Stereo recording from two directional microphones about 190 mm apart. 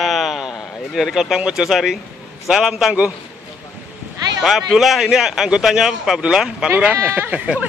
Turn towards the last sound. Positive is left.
turn(degrees=-5)  # may be behind; listen again after turning